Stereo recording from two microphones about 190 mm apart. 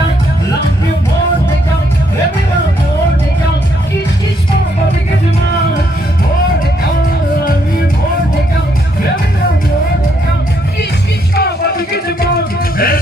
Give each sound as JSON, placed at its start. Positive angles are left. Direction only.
{"t": 11.3, "sound": "music", "side_deg": 55}